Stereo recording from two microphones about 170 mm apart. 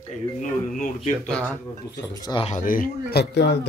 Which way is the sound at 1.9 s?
20° left (ahead or behind).